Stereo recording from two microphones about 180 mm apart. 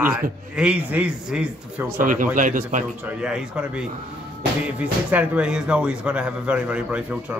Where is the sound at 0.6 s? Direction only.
5° right (ahead or behind).